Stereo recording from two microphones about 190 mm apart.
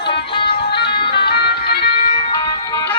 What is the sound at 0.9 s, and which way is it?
Music, 60° left (ahead or behind).